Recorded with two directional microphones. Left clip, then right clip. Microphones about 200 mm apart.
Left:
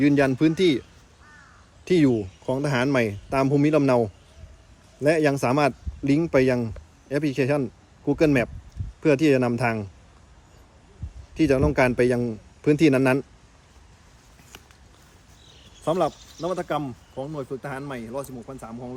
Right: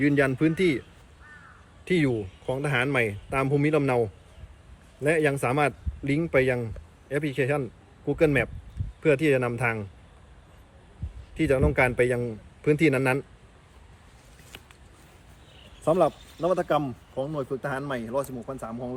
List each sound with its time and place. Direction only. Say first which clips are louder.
0.1 s speech: left 3 dB; 40° left (ahead or behind)
1.9 s speech: left 5 dB; 45° left (ahead or behind)
11.3 s speech: left 3 dB; 45° left (ahead or behind)
15.8 s speech: right 1 dB; 5° left (ahead or behind)